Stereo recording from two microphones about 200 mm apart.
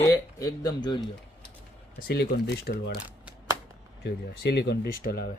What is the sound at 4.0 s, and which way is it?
Speech, 55° left (ahead or behind).